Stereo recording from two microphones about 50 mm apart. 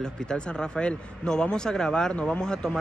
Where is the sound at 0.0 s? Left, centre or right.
Centre.